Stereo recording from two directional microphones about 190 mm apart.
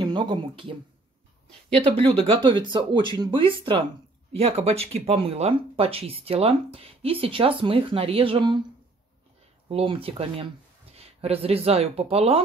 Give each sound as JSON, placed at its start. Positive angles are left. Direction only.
{"t": 0.0, "sound": "speech", "side_deg": -25}
{"t": 1.8, "sound": "speech", "side_deg": -30}
{"t": 9.7, "sound": "speech", "side_deg": -30}